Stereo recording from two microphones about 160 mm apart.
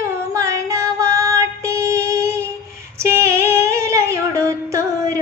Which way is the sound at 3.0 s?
15° right (ahead or behind).